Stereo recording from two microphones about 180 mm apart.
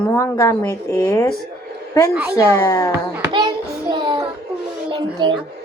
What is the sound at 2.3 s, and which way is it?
Speech, 20° left (ahead or behind).